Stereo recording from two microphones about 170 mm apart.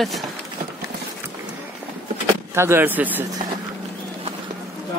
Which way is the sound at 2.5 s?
15° right (ahead or behind).